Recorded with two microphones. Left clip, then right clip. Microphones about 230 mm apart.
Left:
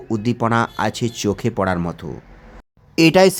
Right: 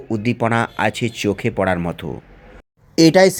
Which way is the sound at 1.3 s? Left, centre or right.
Centre.